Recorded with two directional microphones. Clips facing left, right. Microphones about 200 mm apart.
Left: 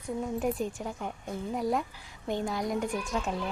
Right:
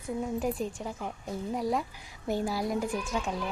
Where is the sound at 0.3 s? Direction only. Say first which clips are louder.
Left 1 dB; centre (ahead or behind).